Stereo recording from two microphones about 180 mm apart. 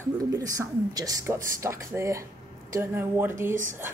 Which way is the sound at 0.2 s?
20° right (ahead or behind).